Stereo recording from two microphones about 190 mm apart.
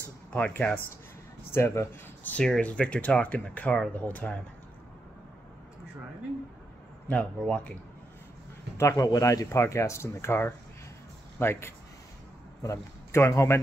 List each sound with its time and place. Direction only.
0.3 s speech: 10° left (ahead or behind)
7.1 s speech: 5° left (ahead or behind)
8.7 s speech: 15° left (ahead or behind)